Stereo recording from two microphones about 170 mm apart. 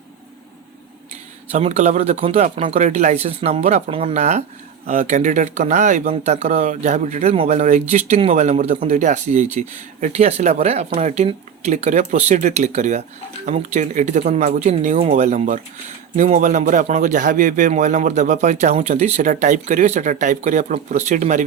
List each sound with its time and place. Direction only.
1.5 s speech: 40° right (ahead or behind)
2.7 s speech: 45° right (ahead or behind)